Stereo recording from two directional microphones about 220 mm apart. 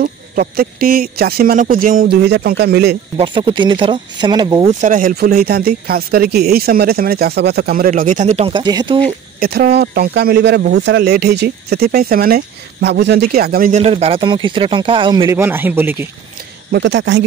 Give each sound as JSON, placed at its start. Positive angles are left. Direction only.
{"t": 0.0, "sound": "speech", "side_deg": -40}
{"t": 3.2, "sound": "speech", "side_deg": -20}
{"t": 4.7, "sound": "speech", "side_deg": -35}
{"t": 9.4, "sound": "speech", "side_deg": -45}
{"t": 16.7, "sound": "speech", "side_deg": -55}